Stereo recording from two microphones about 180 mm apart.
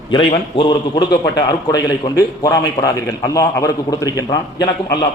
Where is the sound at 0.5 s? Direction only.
25° left (ahead or behind).